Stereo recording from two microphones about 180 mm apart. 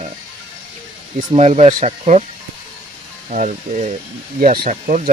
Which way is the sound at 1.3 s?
35° right (ahead or behind).